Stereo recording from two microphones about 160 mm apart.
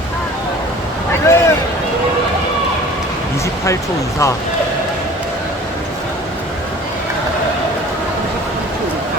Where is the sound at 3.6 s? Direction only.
20° left (ahead or behind).